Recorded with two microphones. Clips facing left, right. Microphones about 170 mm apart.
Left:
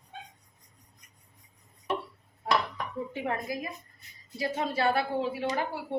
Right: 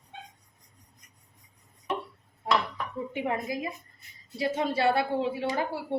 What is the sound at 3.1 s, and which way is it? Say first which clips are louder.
Speech: right 4 dB; 20° right (ahead or behind).